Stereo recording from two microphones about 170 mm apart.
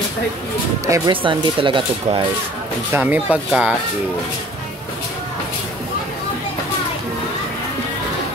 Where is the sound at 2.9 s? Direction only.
10° right (ahead or behind).